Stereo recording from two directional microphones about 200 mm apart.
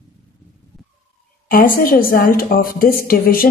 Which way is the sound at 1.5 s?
45° left (ahead or behind).